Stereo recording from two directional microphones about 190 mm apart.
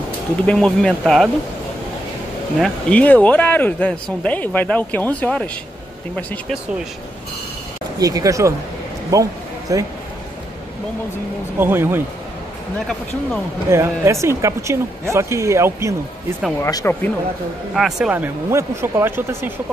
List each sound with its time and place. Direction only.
0.5 s speech: 5° left (ahead or behind)
2.6 s speech: 5° left (ahead or behind)
8.0 s speech: 20° right (ahead or behind)
9.1 s a sound: 15° right (ahead or behind)
11.5 s speech: 10° right (ahead or behind)
13.7 s speech: 15° right (ahead or behind)
16.6 s speech: 15° left (ahead or behind)
17.7 s speech: centre (ahead or behind)